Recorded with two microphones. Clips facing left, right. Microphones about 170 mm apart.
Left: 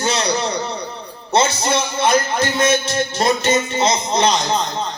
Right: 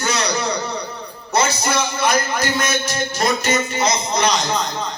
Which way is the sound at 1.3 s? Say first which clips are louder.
Left 2 dB; 25° left (ahead or behind).